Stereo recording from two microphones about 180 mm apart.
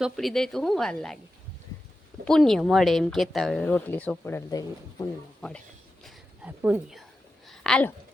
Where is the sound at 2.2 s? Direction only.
5° left (ahead or behind).